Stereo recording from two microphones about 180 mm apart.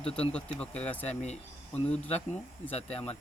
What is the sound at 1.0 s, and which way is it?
Speech, 40° left (ahead or behind).